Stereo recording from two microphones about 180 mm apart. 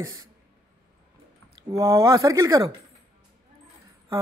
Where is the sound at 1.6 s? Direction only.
20° right (ahead or behind).